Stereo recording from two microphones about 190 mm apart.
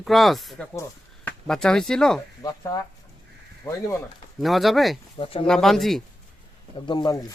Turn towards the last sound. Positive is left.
turn(degrees=20)  # may be behind; listen again after turning